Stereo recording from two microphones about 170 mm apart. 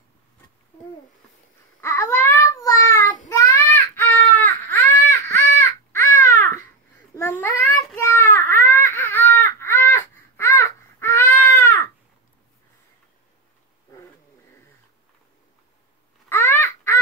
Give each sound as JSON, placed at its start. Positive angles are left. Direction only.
{"t": 1.8, "sound": "child singing", "side_deg": 15}
{"t": 3.3, "sound": "baby cry", "side_deg": 15}
{"t": 7.2, "sound": "child singing", "side_deg": 15}
{"t": 16.3, "sound": "crow", "side_deg": 15}